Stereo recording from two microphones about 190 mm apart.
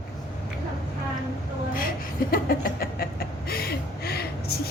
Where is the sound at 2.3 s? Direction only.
50° left (ahead or behind).